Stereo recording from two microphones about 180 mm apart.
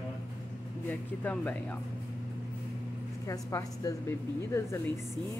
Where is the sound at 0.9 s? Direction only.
10° left (ahead or behind).